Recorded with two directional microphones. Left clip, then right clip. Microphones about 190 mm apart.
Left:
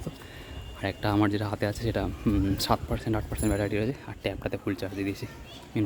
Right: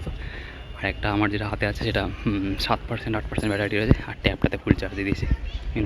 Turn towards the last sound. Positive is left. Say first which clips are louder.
# right 1 dB
turn(degrees=20)  # may be behind; listen again after turning